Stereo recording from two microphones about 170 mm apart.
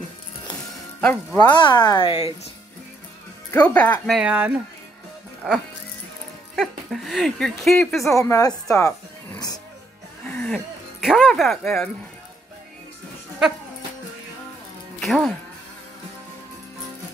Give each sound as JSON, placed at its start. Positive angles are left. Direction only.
{"t": 1.0, "sound": "speech", "side_deg": 5}
{"t": 1.5, "sound": "speech", "side_deg": 25}
{"t": 3.5, "sound": "speech", "side_deg": 10}
{"t": 4.2, "sound": "speech", "side_deg": -10}
{"t": 8.2, "sound": "speech", "side_deg": 20}
{"t": 8.7, "sound": "music", "side_deg": 15}
{"t": 10.3, "sound": "speech", "side_deg": 5}
{"t": 15.0, "sound": "speech", "side_deg": 0}